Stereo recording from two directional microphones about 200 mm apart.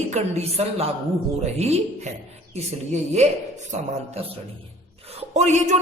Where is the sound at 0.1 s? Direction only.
30° right (ahead or behind).